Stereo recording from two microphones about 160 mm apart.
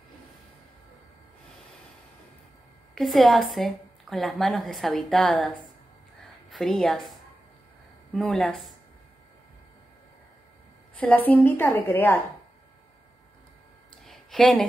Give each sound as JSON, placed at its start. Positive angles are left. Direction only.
{"t": 2.9, "sound": "a woman's voice", "side_deg": 0}
{"t": 6.5, "sound": "a woman's voice", "side_deg": 0}
{"t": 11.0, "sound": "a woman's voice", "side_deg": 10}
{"t": 14.0, "sound": "a sound", "side_deg": 0}